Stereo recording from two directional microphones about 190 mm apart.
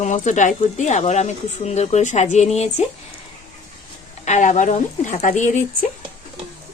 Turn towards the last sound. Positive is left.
turn(degrees=40)  # may be behind; listen again after turning